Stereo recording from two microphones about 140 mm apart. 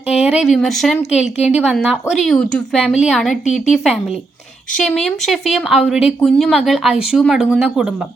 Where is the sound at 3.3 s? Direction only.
55° left (ahead or behind).